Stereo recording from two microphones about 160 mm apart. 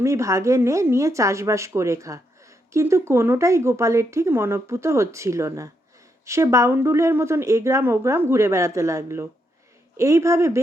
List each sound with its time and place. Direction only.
0.0 s speech: 20° right (ahead or behind)